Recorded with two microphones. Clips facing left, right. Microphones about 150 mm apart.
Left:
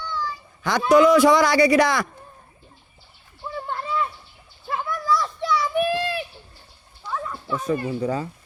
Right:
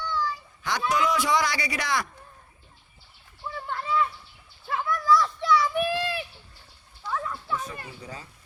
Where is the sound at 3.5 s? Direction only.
35° left (ahead or behind).